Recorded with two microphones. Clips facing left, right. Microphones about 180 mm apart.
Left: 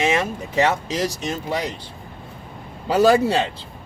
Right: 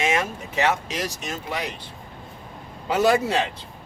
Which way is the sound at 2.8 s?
35° left (ahead or behind).